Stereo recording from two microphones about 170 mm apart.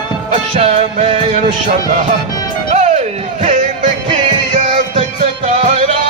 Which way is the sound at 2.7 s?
40° right (ahead or behind).